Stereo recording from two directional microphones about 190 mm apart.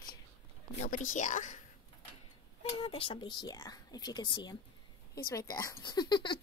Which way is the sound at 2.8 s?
30° left (ahead or behind).